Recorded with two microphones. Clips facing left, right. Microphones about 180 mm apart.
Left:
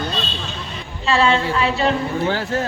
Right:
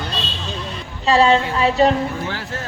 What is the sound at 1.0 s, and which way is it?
Speech, 40° right (ahead or behind).